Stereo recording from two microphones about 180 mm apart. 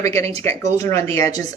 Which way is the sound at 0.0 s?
15° left (ahead or behind).